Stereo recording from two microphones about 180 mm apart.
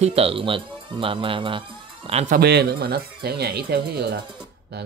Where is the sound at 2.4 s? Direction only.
65° right (ahead or behind).